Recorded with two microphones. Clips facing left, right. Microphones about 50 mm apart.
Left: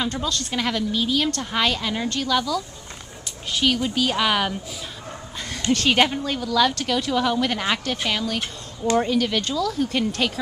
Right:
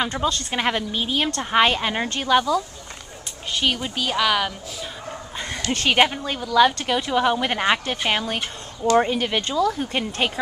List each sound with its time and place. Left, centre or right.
0.0 s a woman's voice: right
3.6 s speech: centre
4.0 s speech: centre
5.7 s a woman's voice: centre
8.1 s a woman's voice: right